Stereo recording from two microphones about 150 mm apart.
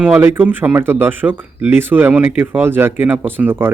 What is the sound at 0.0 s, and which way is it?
A man's voice, 10° right (ahead or behind).